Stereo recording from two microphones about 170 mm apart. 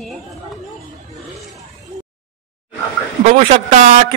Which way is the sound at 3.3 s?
50° right (ahead or behind).